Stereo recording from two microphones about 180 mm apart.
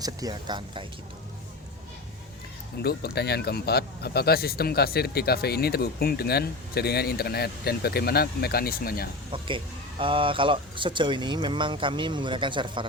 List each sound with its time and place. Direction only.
0.0 s speech: 20° right (ahead or behind)
2.8 s speech: 65° left (ahead or behind)
10.0 s speech: 30° right (ahead or behind)